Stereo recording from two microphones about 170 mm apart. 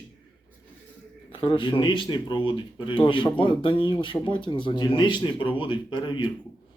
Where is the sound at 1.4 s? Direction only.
30° left (ahead or behind).